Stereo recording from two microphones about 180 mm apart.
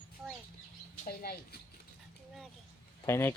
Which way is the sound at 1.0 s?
55° left (ahead or behind).